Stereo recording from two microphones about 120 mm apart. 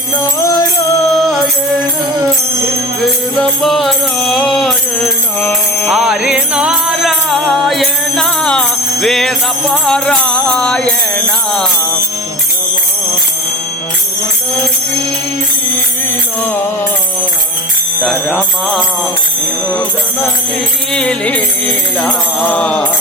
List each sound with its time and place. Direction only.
0.2 s music: 30° left (ahead or behind)
1.1 s music: centre (ahead or behind)
3.6 s music: centre (ahead or behind)
5.4 s music: 15° left (ahead or behind)
5.9 s music: 5° right (ahead or behind)
18.3 s music: 10° left (ahead or behind)
20.9 s music: 10° left (ahead or behind)